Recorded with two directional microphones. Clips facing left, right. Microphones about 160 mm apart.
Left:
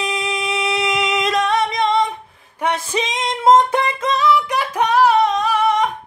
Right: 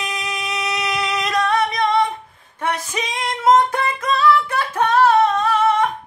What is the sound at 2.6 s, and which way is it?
Music, 25° left (ahead or behind).